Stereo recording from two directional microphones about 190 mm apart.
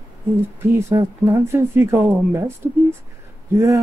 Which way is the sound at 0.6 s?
15° right (ahead or behind).